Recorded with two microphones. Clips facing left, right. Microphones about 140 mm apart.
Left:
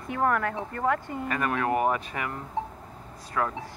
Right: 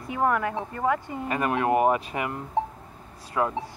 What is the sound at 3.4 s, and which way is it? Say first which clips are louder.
Speech: right 3 dB; 20° right (ahead or behind).